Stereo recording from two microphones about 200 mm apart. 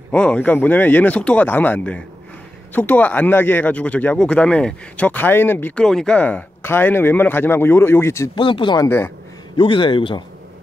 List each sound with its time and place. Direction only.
0.1 s speech: 5° left (ahead or behind)
8.4 s speech: 25° left (ahead or behind)
8.8 s speech: 10° left (ahead or behind)
9.6 s speech: 25° left (ahead or behind)